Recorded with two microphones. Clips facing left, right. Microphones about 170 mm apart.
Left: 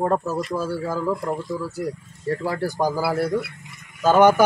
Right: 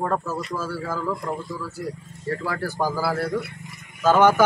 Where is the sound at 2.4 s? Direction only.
25° left (ahead or behind).